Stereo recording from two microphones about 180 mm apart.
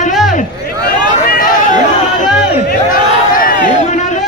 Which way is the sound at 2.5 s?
50° left (ahead or behind).